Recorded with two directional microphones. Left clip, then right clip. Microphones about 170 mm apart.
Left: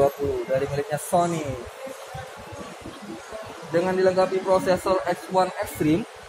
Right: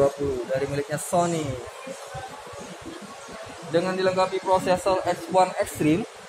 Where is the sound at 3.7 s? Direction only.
10° right (ahead or behind).